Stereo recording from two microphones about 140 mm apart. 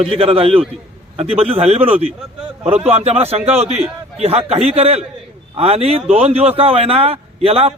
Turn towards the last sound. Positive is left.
turn(degrees=-45)  # may be behind; listen again after turning